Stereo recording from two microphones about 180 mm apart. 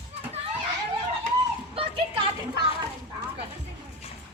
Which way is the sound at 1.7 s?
30° right (ahead or behind).